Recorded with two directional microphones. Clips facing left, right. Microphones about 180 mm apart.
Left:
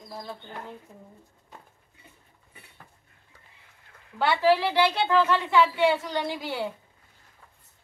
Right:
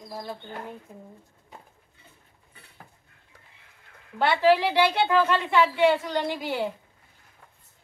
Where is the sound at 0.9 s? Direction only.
15° right (ahead or behind).